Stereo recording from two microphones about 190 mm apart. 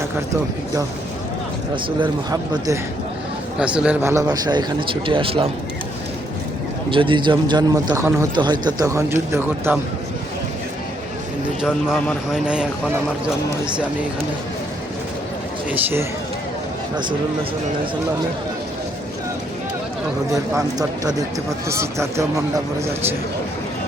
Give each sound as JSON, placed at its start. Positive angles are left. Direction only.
{"t": 1.7, "sound": "a man's voice", "side_deg": -25}
{"t": 3.6, "sound": "a man's voice", "side_deg": -5}
{"t": 6.9, "sound": "a man's voice", "side_deg": -25}
{"t": 11.6, "sound": "speech", "side_deg": 0}
{"t": 15.7, "sound": "a man's voice", "side_deg": -10}
{"t": 20.6, "sound": "a man's voice", "side_deg": -20}